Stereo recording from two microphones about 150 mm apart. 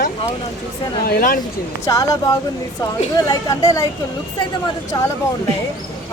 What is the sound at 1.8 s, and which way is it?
Speech, 20° left (ahead or behind).